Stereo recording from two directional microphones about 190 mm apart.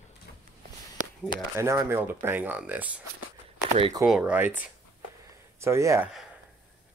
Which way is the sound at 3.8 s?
20° right (ahead or behind).